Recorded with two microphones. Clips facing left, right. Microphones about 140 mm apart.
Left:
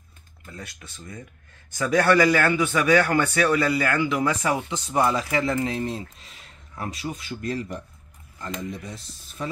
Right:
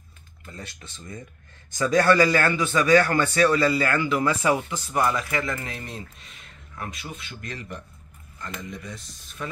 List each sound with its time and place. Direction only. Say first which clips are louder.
0.5 s a man's voice: even; 5° left (ahead or behind); by 7.8 s 35° left (ahead or behind)
8.4 s speech: left 4 dB; 20° left (ahead or behind)
8.8 s speech: left 1 dB; 35° left (ahead or behind)